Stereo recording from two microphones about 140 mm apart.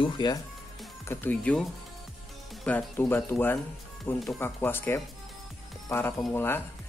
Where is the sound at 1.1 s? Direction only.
15° left (ahead or behind).